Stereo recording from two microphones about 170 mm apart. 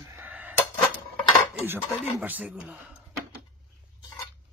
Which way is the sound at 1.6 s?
10° right (ahead or behind).